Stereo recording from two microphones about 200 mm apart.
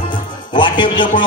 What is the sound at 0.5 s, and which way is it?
Speech, 25° left (ahead or behind).